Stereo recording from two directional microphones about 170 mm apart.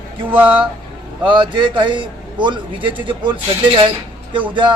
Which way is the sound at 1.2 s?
30° right (ahead or behind).